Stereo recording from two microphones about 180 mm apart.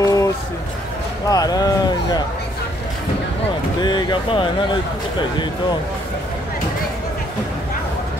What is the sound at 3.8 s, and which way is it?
Speech, 25° left (ahead or behind).